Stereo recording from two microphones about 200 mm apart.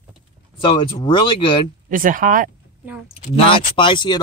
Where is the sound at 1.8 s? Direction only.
45° right (ahead or behind).